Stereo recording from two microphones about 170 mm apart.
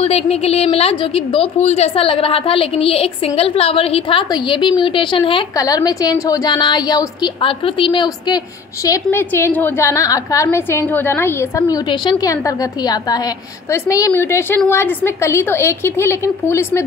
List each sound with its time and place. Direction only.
0.0 s a woman's voice: 35° left (ahead or behind)
8.8 s a woman's voice: 15° left (ahead or behind)